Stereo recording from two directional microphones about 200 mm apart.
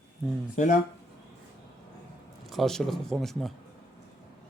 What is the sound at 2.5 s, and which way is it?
Speech, centre (ahead or behind).